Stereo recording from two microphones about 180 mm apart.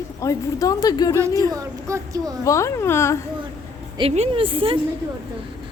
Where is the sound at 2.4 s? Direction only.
15° left (ahead or behind).